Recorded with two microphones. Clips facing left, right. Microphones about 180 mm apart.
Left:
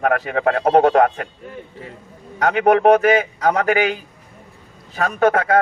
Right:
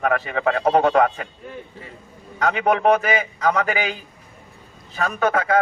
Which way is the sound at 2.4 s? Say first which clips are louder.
Left 4 dB; 55° left (ahead or behind).